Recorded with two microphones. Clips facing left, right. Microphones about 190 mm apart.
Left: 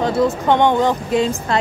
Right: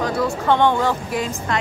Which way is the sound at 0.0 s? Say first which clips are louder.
Left 4 dB; 20° left (ahead or behind).